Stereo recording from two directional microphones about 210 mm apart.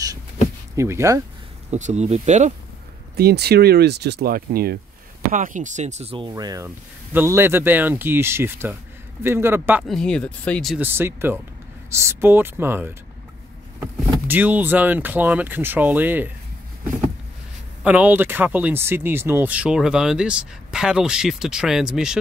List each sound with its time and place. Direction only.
0.7 s speech: 15° right (ahead or behind)
1.7 s speech: 35° right (ahead or behind)
3.2 s speech: 50° right (ahead or behind); by 10.9 s centre (ahead or behind)
10.9 s speech: 10° right (ahead or behind)
14.2 s speech: 10° right (ahead or behind)
17.8 s speech: 5° right (ahead or behind)